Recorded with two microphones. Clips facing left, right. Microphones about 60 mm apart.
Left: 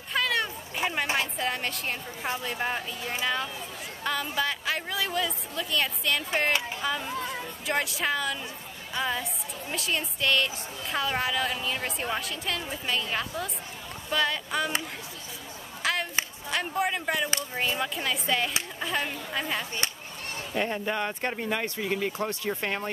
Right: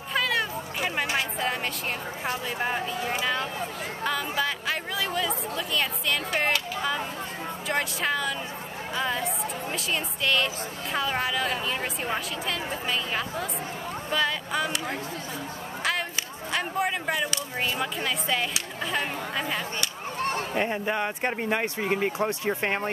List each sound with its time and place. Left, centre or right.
0.1 s a sound: centre
1.1 s a woman's voice: centre
7.6 s a woman's voice: centre
15.8 s chop: centre
16.5 s a sound: centre
17.7 s a woman's voice: centre
20.5 s speech: centre